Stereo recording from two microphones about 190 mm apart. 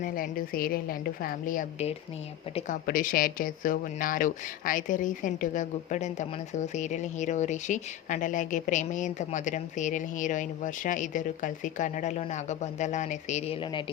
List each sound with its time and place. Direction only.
0.0 s a woman's voice: 50° left (ahead or behind); by 13.8 s 30° left (ahead or behind)